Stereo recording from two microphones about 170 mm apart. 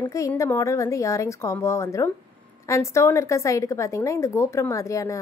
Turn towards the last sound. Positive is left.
turn(degrees=20)  # may be behind; listen again after turning